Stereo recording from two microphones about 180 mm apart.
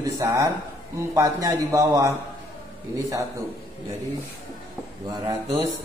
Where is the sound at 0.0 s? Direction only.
15° right (ahead or behind).